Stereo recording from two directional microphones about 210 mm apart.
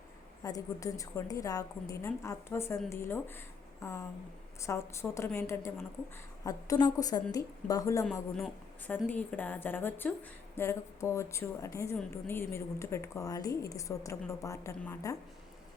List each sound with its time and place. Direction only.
0.4 s a woman's voice: 15° left (ahead or behind)
8.4 s a woman's voice: 5° left (ahead or behind)